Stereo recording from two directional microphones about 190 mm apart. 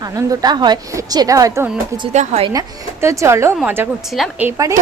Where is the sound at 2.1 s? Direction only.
35° right (ahead or behind).